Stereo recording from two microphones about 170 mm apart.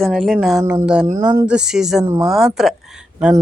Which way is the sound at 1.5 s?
5° right (ahead or behind).